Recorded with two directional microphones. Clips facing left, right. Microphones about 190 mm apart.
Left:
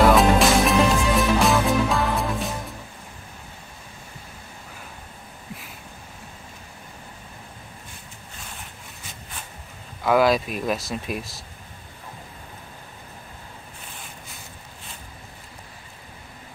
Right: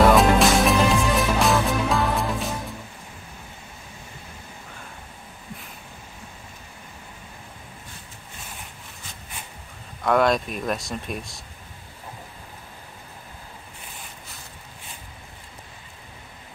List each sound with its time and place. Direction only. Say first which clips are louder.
0.0 s music: even; centre (ahead or behind)
10.0 s speech: left 1 dB; 5° left (ahead or behind)